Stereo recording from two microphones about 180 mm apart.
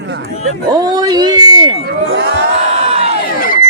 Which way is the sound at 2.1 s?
90° right.